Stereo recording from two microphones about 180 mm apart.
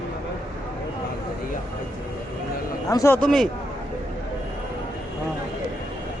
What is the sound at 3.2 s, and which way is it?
Speech, 5° left (ahead or behind).